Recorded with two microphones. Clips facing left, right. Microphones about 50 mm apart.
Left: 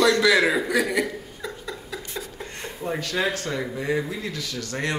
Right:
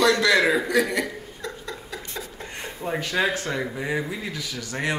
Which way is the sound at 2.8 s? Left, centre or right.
Centre.